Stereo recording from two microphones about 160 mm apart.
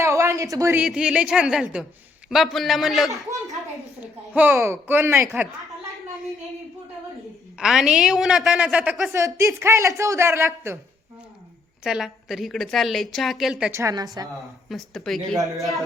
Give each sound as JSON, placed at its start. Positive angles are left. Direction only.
{"t": 0.0, "sound": "a sound", "side_deg": -20}
{"t": 0.8, "sound": "a woman's voice", "side_deg": -5}
{"t": 3.2, "sound": "a sound", "side_deg": -20}
{"t": 4.4, "sound": "speech", "side_deg": -15}
{"t": 7.6, "sound": "a woman's voice", "side_deg": -5}
{"t": 9.1, "sound": "speech", "side_deg": -20}
{"t": 11.8, "sound": "a woman's voice", "side_deg": -5}
{"t": 13.7, "sound": "a woman's voice", "side_deg": -20}
{"t": 14.7, "sound": "a woman's voice", "side_deg": 0}